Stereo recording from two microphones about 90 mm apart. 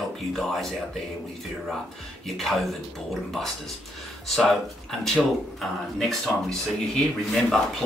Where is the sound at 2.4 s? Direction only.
Centre (ahead or behind).